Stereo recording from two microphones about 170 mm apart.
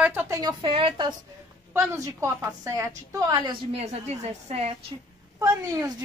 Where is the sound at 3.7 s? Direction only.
40° right (ahead or behind).